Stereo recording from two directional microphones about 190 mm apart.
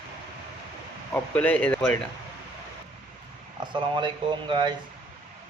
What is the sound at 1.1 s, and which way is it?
Speech, 5° left (ahead or behind).